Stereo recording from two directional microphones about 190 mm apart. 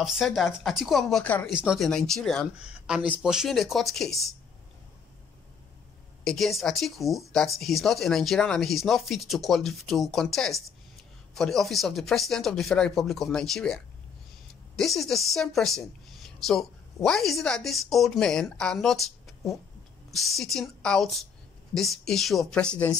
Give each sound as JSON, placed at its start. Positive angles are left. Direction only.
{"t": 0.0, "sound": "a woman's voice", "side_deg": 0}
{"t": 1.5, "sound": "a woman's voice", "side_deg": -5}
{"t": 6.2, "sound": "a woman's voice", "side_deg": 0}
{"t": 14.8, "sound": "a woman's voice", "side_deg": 0}